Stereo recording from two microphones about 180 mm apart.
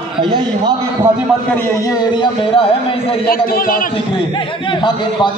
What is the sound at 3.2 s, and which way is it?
Speech, 55° left (ahead or behind).